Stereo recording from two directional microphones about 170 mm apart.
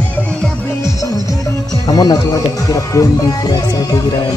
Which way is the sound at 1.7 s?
20° left (ahead or behind).